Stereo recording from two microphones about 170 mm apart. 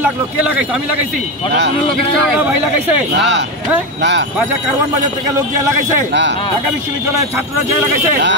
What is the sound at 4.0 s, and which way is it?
Speech, 90° right.